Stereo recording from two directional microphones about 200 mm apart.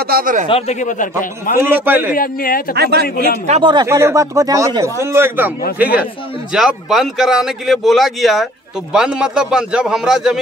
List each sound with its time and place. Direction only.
0.0 s a man's voice: 45° right (ahead or behind)
0.5 s speech: 30° left (ahead or behind)
1.6 s speech: 10° right (ahead or behind)
2.1 s a man's voice: 45° left (ahead or behind)
2.7 s a man's voice: 55° right (ahead or behind)
3.4 s speech: 25° right (ahead or behind); by 10.4 s centre (ahead or behind)